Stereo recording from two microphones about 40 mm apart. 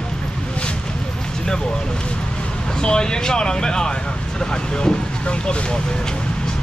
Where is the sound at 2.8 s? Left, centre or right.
Left.